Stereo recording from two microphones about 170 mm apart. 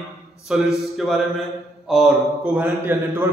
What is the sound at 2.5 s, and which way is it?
Speech, 10° right (ahead or behind).